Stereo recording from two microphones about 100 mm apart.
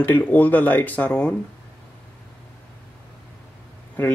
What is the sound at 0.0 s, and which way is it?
Speech, 20° left (ahead or behind).